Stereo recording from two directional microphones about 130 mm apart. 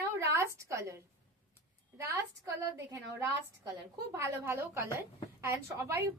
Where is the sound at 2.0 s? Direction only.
20° right (ahead or behind).